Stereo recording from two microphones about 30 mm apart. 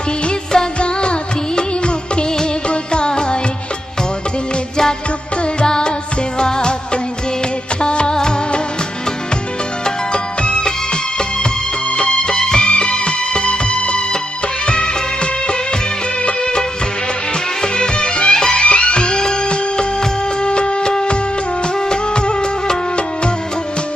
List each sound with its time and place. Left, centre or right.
0.3 s music: left
0.7 s music: left
5.4 s music: left
7.8 s music of bollywood: left
9.8 s music: left
11.9 s music: left
12.6 s music: left
16.2 s music of bollywood: left
17.6 s music: left
18.6 s music: left